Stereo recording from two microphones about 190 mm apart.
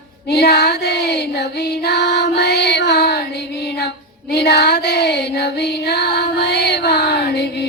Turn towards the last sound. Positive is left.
turn(degrees=60)  # may be behind; listen again after turning